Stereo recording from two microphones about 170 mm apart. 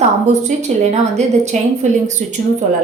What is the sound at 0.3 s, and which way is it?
A woman's voice, 40° right (ahead or behind).